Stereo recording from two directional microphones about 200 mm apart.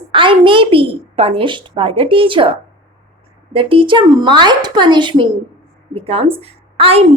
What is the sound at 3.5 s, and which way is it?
A woman's voice, 25° right (ahead or behind).